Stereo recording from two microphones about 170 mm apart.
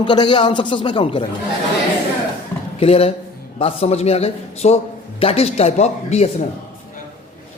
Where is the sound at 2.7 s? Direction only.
35° left (ahead or behind).